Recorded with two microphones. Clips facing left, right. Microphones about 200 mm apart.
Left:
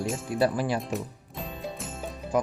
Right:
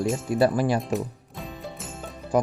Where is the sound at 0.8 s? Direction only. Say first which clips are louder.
Right 5 dB; centre (ahead or behind).